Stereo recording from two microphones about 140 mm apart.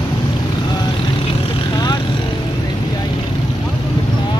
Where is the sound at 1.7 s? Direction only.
30° left (ahead or behind).